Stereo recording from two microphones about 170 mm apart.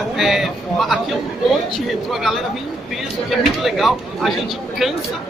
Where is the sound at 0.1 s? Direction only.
Centre (ahead or behind).